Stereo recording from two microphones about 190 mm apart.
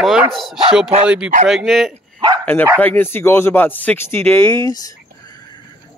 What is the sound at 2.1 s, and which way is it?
Dog, 20° right (ahead or behind).